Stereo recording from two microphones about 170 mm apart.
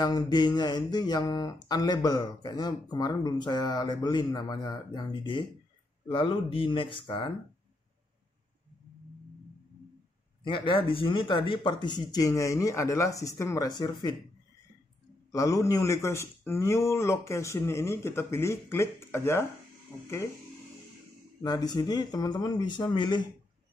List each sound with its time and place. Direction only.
0.0 s speech: 25° left (ahead or behind)
10.4 s speech: 30° left (ahead or behind)
15.3 s speech: 20° left (ahead or behind)
21.4 s speech: 20° left (ahead or behind)